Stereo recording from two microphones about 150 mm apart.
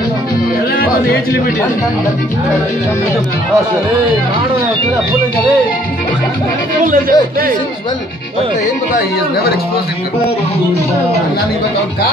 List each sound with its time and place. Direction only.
0.7 s music: 90° left
6.8 s speech: 70° right (ahead or behind)
8.9 s speech: 90° left